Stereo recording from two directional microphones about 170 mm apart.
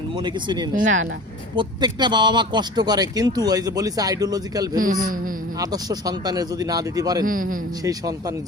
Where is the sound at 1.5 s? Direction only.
25° right (ahead or behind).